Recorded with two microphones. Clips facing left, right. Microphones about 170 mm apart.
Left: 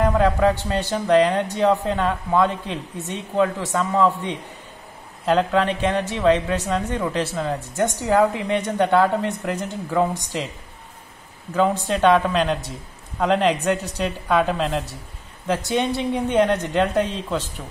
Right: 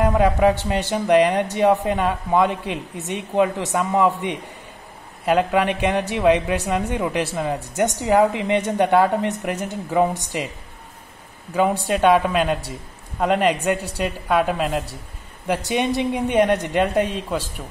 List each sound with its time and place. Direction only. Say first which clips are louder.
0.0 s speech: right 1 dB; 15° right (ahead or behind)
11.5 s a woman's voice: right 1 dB; 10° right (ahead or behind)